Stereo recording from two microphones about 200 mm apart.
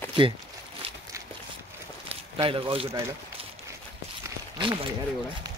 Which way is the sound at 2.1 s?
25° right (ahead or behind).